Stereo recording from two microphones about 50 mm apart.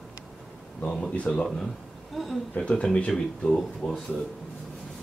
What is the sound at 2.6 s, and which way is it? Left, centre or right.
Speech, left.